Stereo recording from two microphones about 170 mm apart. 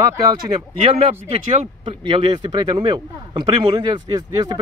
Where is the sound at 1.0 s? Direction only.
35° right (ahead or behind).